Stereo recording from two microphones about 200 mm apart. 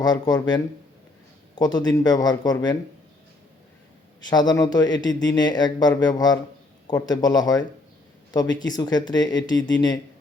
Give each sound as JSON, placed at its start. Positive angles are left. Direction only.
{"t": 0.0, "sound": "speech", "side_deg": 20}
{"t": 4.3, "sound": "speech", "side_deg": 20}